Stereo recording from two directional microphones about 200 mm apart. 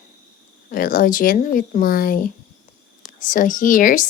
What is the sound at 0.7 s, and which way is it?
A woman's voice, 45° left (ahead or behind).